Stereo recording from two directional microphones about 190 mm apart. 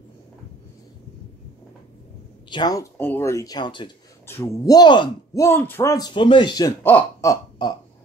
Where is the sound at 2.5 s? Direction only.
20° left (ahead or behind).